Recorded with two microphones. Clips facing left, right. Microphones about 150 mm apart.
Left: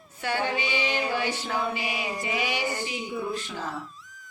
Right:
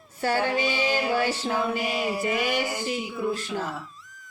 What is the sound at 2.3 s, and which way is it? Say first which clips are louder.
Speech: even; 50° right (ahead or behind).